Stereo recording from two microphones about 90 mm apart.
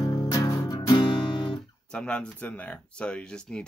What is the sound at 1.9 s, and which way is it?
Speech, 10° left (ahead or behind).